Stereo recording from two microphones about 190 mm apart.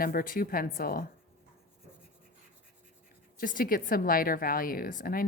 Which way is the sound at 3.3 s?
45° left (ahead or behind).